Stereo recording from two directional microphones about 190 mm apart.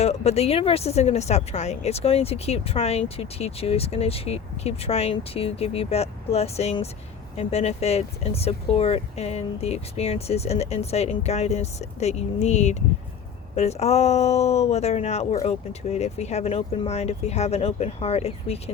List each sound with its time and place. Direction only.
0.0 s speech: 35° left (ahead or behind)